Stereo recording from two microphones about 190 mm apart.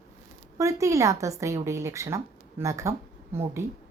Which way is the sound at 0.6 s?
15° right (ahead or behind).